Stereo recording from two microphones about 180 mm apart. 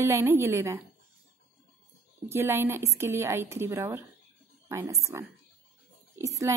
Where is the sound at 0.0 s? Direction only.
15° right (ahead or behind).